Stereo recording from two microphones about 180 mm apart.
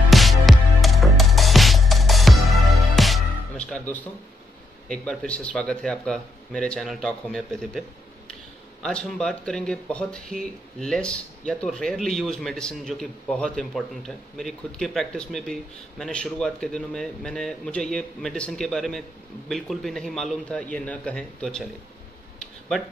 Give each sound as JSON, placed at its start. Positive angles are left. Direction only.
{"t": 0.1, "sound": "music", "side_deg": 0}
{"t": 4.8, "sound": "speech", "side_deg": 5}
{"t": 8.8, "sound": "speech", "side_deg": 5}